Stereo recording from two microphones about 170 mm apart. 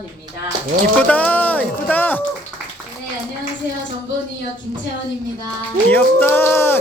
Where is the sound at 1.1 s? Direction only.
10° left (ahead or behind).